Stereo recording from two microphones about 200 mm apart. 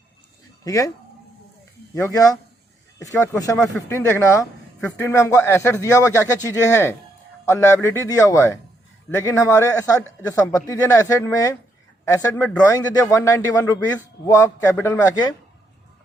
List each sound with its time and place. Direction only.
0.6 s speech: 15° left (ahead or behind)
2.0 s speech: 15° left (ahead or behind)